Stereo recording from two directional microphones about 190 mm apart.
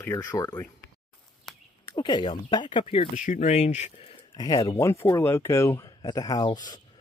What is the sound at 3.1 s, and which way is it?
Speech, 40° left (ahead or behind).